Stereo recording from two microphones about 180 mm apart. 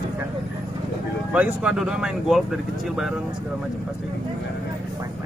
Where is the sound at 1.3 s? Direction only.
5° right (ahead or behind).